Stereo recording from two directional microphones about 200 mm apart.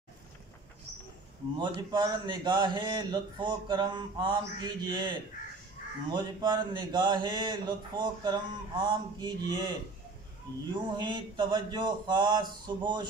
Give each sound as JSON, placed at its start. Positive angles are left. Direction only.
{"t": 1.6, "sound": "speech", "side_deg": -20}
{"t": 6.1, "sound": "speech", "side_deg": -20}